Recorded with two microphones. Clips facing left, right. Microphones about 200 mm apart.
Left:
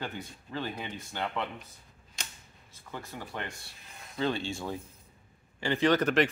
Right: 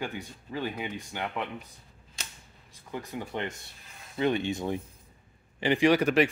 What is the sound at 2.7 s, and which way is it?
Speech, 15° right (ahead or behind).